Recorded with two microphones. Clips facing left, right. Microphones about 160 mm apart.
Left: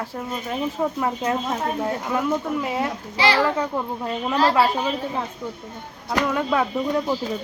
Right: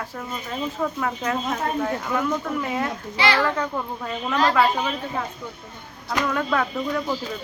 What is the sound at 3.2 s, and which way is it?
Speech, 30° left (ahead or behind).